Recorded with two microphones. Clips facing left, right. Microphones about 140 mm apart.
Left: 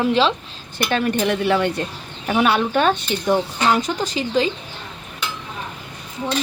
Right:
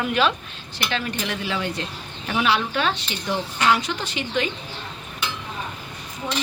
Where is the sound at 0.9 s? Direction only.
55° left (ahead or behind).